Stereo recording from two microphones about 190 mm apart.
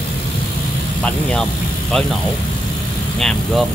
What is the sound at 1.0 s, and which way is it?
Speech, 5° left (ahead or behind).